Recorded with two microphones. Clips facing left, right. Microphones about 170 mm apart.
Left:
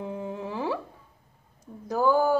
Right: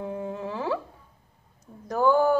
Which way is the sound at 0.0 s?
20° left (ahead or behind).